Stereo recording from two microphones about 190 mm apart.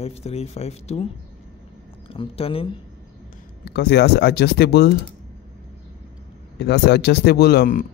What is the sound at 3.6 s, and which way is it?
Speech, 60° left (ahead or behind).